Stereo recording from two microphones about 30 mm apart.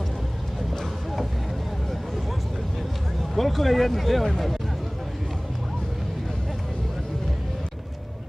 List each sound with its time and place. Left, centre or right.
3.3 s speech: centre